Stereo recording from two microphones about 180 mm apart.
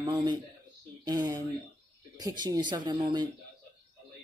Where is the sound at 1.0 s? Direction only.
20° right (ahead or behind).